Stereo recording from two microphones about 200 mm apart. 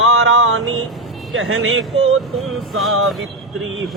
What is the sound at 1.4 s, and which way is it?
Speech, 85° right.